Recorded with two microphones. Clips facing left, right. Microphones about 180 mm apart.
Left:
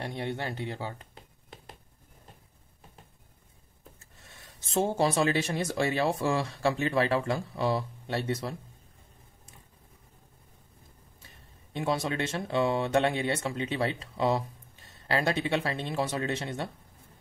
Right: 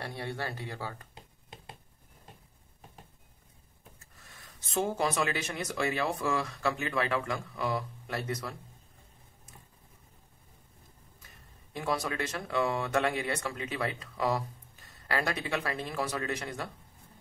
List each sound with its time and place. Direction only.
0.0 s speech: 20° left (ahead or behind)
4.0 s speech: 25° left (ahead or behind)
11.2 s speech: 25° left (ahead or behind)